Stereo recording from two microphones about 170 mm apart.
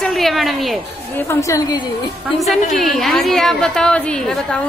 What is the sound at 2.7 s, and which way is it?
A woman's voice, centre (ahead or behind).